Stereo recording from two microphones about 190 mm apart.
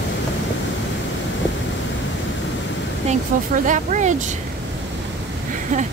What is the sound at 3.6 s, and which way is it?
Speech, 40° right (ahead or behind).